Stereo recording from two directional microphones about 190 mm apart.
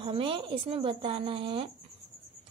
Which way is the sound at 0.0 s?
30° right (ahead or behind).